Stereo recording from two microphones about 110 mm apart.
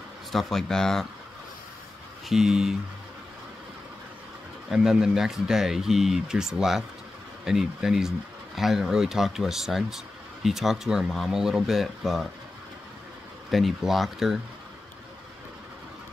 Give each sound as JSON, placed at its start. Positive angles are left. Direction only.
{"t": 0.3, "sound": "speech", "side_deg": 0}
{"t": 2.2, "sound": "speech", "side_deg": -5}
{"t": 4.6, "sound": "speech", "side_deg": -5}
{"t": 13.5, "sound": "speech", "side_deg": 0}